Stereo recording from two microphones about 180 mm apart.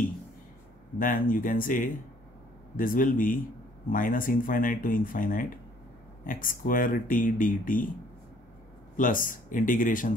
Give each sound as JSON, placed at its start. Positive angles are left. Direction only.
{"t": 0.9, "sound": "speech", "side_deg": 50}
{"t": 8.9, "sound": "speech", "side_deg": 50}